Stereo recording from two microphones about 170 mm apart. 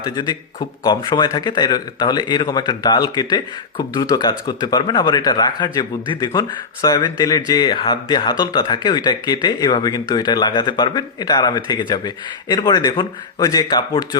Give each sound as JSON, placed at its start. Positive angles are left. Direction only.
{"t": 0.0, "sound": "speech", "side_deg": 25}